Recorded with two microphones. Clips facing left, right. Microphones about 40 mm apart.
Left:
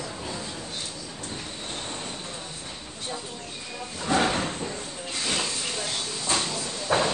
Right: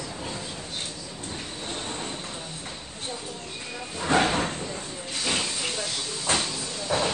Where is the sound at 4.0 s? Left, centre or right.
Right.